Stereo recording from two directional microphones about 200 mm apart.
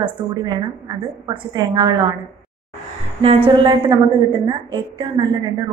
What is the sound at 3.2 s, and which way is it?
A woman's voice, 30° right (ahead or behind).